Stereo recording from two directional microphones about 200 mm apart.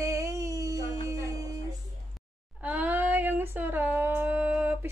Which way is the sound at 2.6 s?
10° right (ahead or behind).